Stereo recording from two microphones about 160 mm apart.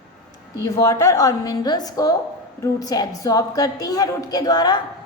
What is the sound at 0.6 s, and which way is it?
A woman's voice, 20° left (ahead or behind).